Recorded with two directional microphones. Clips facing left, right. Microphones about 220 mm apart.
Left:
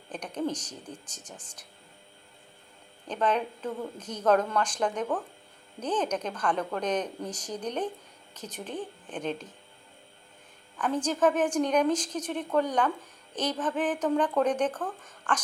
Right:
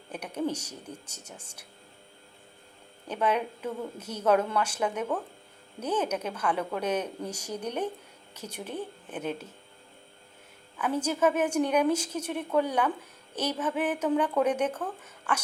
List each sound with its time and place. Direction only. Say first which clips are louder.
0.1 s a woman's voice: even; 10° right (ahead or behind)
3.1 s a woman's voice: even; 10° right (ahead or behind)
10.8 s a woman's voice: even; 10° right (ahead or behind)